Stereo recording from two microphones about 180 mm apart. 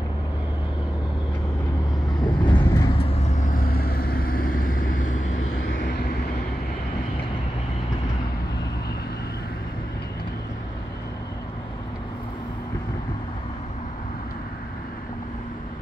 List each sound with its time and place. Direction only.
2.1 s vehicle: 25° left (ahead or behind)
3.0 s vehicle: 35° left (ahead or behind)